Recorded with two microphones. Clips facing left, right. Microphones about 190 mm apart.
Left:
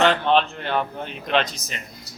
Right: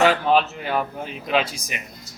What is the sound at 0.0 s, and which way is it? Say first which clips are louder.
Speech: right 1 dB; 5° right (ahead or behind).